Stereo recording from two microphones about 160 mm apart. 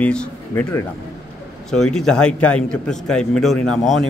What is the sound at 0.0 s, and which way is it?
A man's voice, 5° left (ahead or behind).